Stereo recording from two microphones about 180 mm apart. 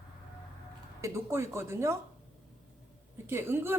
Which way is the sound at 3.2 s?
15° right (ahead or behind).